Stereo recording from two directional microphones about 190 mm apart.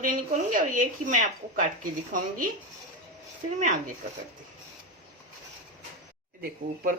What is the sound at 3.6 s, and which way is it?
Speech, 40° right (ahead or behind).